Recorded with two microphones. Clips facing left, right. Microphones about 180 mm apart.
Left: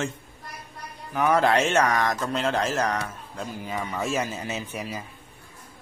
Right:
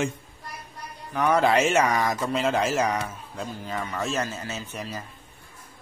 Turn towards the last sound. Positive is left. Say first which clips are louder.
# left 2 dB
turn(degrees=10)  # may be behind; listen again after turning